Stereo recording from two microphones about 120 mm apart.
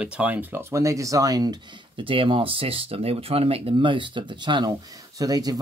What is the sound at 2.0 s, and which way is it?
Speech, 45° right (ahead or behind).